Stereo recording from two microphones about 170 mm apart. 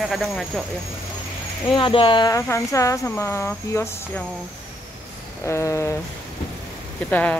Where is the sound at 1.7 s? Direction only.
30° left (ahead or behind).